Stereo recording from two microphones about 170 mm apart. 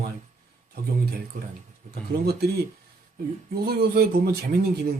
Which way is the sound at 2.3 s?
70° right (ahead or behind).